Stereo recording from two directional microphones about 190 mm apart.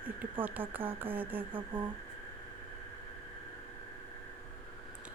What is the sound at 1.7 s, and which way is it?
Speech, 25° right (ahead or behind).